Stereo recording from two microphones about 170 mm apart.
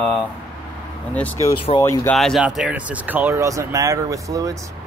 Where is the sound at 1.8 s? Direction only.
15° left (ahead or behind).